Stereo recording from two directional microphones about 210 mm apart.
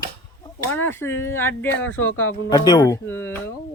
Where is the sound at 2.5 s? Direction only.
20° left (ahead or behind).